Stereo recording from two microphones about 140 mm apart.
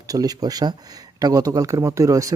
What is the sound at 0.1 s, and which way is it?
Speech, 25° right (ahead or behind).